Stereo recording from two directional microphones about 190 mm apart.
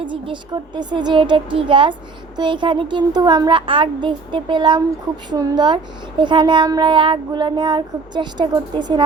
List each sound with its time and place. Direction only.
0.0 s speech: 25° right (ahead or behind)